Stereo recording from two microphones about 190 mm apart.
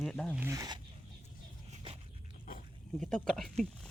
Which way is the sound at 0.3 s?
15° right (ahead or behind).